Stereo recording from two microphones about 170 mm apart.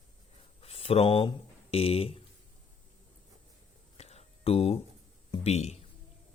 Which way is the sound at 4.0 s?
40° left (ahead or behind).